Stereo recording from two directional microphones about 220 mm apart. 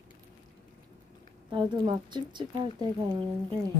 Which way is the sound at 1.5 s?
20° right (ahead or behind).